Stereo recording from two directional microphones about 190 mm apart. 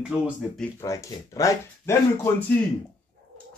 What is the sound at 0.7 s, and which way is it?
Speech, 15° left (ahead or behind).